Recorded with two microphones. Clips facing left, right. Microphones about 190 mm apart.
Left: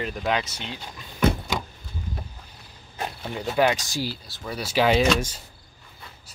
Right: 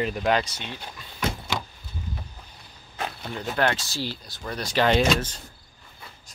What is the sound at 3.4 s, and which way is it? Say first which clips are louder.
Speech: left 3 dB; 10° left (ahead or behind).